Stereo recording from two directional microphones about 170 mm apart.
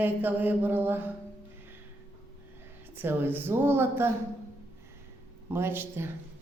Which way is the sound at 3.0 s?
10° right (ahead or behind).